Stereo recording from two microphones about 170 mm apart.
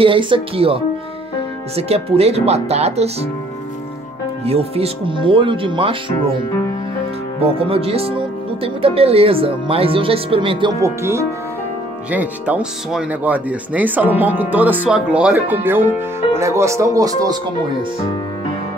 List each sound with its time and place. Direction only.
0.0 s speech: 30° right (ahead or behind)
4.5 s speech: 35° right (ahead or behind)
7.4 s speech: 35° right (ahead or behind)
10.8 s speech: 15° right (ahead or behind)